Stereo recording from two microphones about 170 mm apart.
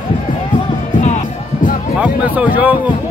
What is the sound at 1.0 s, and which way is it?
Music, 45° left (ahead or behind).